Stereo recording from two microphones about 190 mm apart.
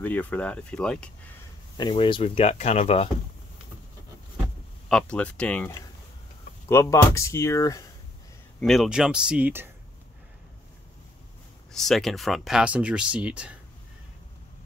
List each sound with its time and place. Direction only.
0.0 s speech: 10° left (ahead or behind)
1.8 s speech: 25° left (ahead or behind)
4.8 s speech: 5° left (ahead or behind)
6.7 s speech: 15° left (ahead or behind)
8.5 s speech: centre (ahead or behind)
11.7 s speech: centre (ahead or behind)